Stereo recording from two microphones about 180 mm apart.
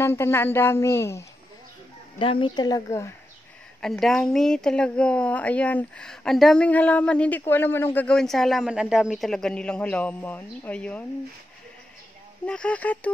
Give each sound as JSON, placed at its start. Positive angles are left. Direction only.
{"t": 0.0, "sound": "speech", "side_deg": 15}
{"t": 2.1, "sound": "speech", "side_deg": 30}
{"t": 3.8, "sound": "speech", "side_deg": 5}
{"t": 12.4, "sound": "speech", "side_deg": 5}